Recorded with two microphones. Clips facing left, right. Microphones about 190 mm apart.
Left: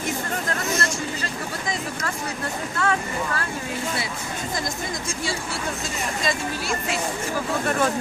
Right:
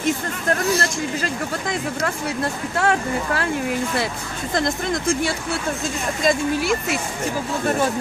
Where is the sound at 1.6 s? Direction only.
60° right (ahead or behind).